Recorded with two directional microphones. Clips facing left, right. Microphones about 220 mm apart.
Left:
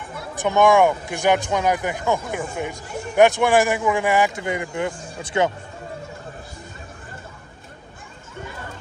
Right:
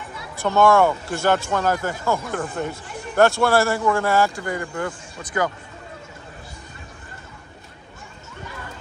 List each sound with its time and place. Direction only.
0.4 s speech: 15° left (ahead or behind)